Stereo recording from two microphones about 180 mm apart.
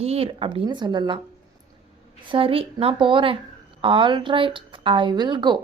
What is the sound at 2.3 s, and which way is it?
Speech, 30° right (ahead or behind).